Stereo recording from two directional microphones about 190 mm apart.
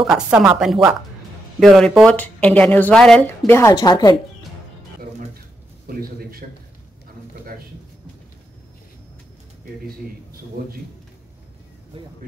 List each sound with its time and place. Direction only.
0.0 s speech: centre (ahead or behind); by 4.1 s 20° left (ahead or behind)
5.9 s a man's voice: 50° right (ahead or behind)
10.6 s a man's voice: 55° right (ahead or behind)